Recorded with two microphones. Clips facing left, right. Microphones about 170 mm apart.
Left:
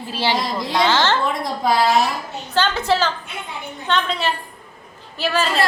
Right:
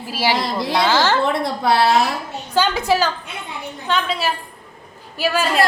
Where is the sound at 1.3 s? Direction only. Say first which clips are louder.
Right 2 dB; 70° right (ahead or behind).